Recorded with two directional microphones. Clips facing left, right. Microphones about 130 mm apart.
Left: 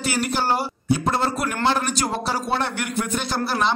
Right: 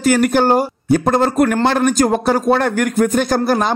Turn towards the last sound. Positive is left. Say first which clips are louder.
# right 7 dB
turn(degrees=-45)  # may be behind; listen again after turning